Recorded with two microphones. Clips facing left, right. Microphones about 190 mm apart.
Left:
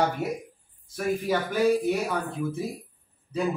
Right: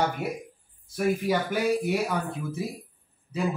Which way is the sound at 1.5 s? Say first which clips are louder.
Left 3 dB; 10° right (ahead or behind).